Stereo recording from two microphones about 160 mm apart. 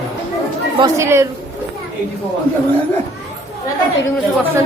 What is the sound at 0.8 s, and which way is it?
Speech, 15° right (ahead or behind).